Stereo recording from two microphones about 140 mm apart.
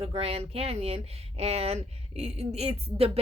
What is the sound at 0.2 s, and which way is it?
Speech, 45° right (ahead or behind).